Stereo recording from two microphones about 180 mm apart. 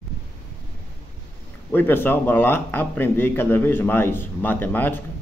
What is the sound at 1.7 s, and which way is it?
A man's voice, 10° left (ahead or behind).